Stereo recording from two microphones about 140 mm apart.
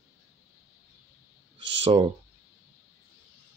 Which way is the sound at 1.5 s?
40° right (ahead or behind).